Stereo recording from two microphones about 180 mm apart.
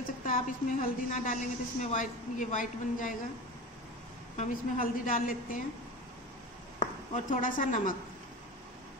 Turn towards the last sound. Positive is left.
turn(degrees=45)  # may be behind; listen again after turning